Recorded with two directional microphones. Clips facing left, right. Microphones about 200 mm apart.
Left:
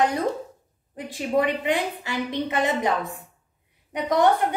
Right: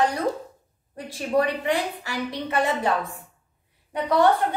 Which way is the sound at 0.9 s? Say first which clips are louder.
Even; 20° left (ahead or behind).